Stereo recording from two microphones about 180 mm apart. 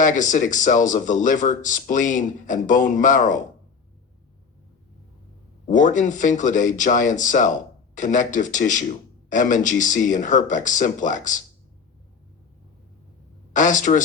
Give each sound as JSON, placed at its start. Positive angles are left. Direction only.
{"t": 0.0, "sound": "a man's voice", "side_deg": 45}
{"t": 5.6, "sound": "a man's voice", "side_deg": 45}
{"t": 13.5, "sound": "a man's voice", "side_deg": 45}